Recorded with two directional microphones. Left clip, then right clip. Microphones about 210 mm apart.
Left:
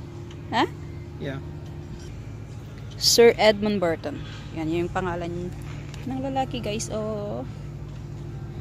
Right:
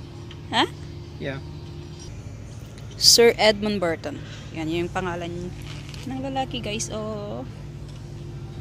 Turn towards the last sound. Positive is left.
turn(degrees=5)  # may be behind; listen again after turning